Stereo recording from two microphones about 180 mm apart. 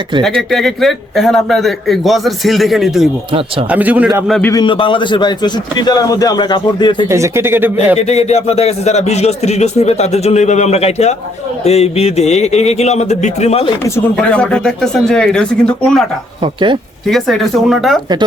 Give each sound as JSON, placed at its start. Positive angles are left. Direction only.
{"t": 0.2, "sound": "a man's voice", "side_deg": 0}
{"t": 4.5, "sound": "a man's voice", "side_deg": 25}
{"t": 7.1, "sound": "a man's voice", "side_deg": -15}
{"t": 7.9, "sound": "speech", "side_deg": 35}
{"t": 14.2, "sound": "a man's voice", "side_deg": 5}
{"t": 16.4, "sound": "speech", "side_deg": -25}
{"t": 17.1, "sound": "a man's voice", "side_deg": 0}